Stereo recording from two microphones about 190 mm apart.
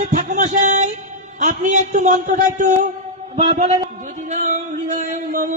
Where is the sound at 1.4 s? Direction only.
40° right (ahead or behind).